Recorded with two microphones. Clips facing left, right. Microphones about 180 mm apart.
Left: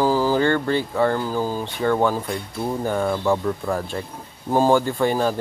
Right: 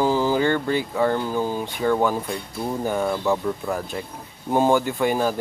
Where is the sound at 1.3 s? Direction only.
10° left (ahead or behind).